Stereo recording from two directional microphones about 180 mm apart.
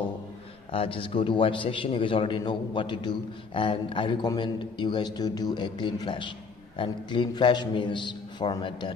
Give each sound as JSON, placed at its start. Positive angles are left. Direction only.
{"t": 0.7, "sound": "a man's voice", "side_deg": 30}